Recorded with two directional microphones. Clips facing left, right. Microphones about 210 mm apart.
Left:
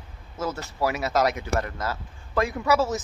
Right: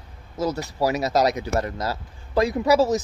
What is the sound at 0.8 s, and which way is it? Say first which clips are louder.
A man's voice: right 3 dB; 35° right (ahead or behind).